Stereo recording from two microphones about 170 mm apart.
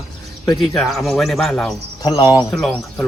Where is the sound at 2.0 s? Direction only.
20° left (ahead or behind).